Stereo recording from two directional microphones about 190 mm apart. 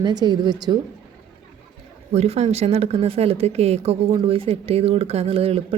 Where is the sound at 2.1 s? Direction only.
35° right (ahead or behind).